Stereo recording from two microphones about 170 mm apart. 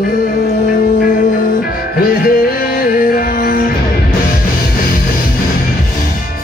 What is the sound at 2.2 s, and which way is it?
Music, 60° left (ahead or behind).